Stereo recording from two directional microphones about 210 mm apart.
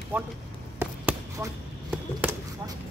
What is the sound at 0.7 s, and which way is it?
Basketball bounce, 10° right (ahead or behind).